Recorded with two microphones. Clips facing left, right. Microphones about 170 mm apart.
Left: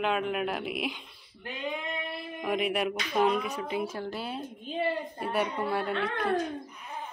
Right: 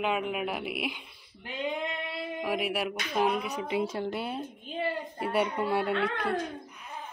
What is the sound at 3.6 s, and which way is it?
Speech, 20° right (ahead or behind).